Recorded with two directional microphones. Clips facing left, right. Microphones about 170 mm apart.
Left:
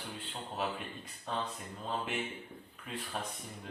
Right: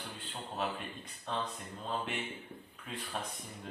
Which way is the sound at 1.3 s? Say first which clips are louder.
Even; 5° left (ahead or behind).